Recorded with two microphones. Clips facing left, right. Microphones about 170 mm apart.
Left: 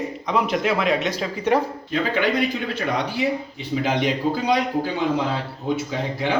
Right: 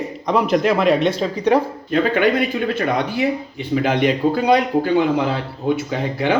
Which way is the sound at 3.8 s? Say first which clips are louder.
Right 4 dB; 60° right (ahead or behind).